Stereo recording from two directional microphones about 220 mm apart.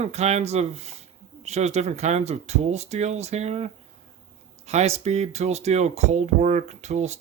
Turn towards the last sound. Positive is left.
turn(degrees=-30)  # may be behind; listen again after turning